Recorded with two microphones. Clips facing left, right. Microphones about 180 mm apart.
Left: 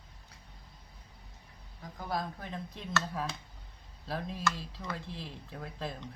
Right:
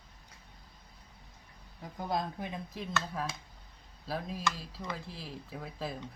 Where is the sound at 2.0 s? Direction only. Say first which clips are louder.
Right 2 dB; 20° right (ahead or behind).